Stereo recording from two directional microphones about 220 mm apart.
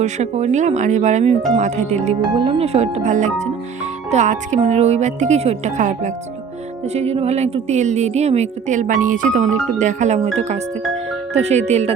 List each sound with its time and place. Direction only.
0.0 s speech: 30° right (ahead or behind)